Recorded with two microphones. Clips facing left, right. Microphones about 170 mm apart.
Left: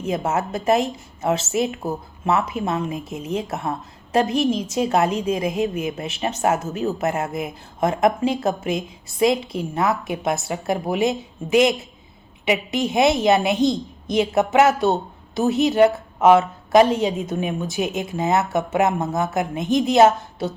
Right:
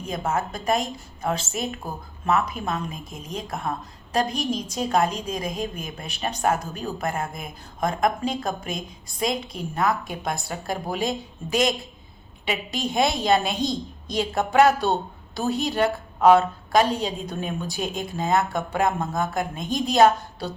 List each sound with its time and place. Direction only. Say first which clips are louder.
0.0 s a woman's voice: left 4 dB; 25° left (ahead or behind)